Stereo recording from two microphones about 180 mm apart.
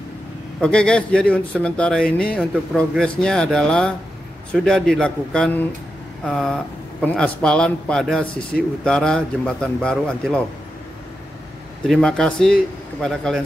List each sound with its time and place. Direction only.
0.6 s a man's voice: 5° left (ahead or behind)
11.9 s speech: 5° left (ahead or behind)